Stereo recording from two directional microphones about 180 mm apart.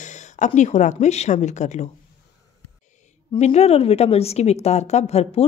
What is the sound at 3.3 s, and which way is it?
Speech, 35° left (ahead or behind).